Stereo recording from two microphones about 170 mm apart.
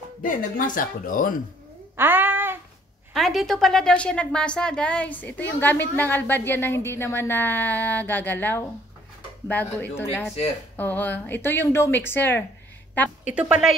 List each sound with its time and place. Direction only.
0.2 s speech: 55° left (ahead or behind)
2.0 s a sound: 10° right (ahead or behind)
3.1 s a woman's voice: centre (ahead or behind)
9.8 s a woman's voice: 15° left (ahead or behind)
13.3 s speech: 5° right (ahead or behind)